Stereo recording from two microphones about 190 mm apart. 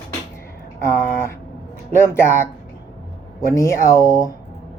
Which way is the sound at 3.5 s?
15° left (ahead or behind).